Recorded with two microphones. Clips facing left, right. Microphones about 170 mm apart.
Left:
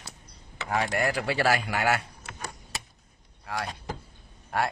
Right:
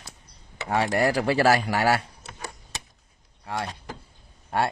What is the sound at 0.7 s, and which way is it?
Speech, 35° right (ahead or behind).